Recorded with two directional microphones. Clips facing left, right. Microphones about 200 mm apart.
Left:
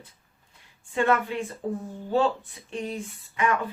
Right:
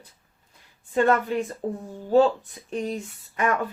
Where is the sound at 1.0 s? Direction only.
40° right (ahead or behind).